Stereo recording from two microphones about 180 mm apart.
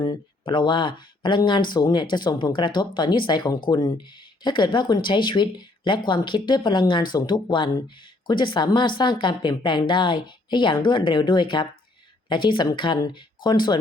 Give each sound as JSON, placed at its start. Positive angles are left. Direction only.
{"t": 0.0, "sound": "speech", "side_deg": 25}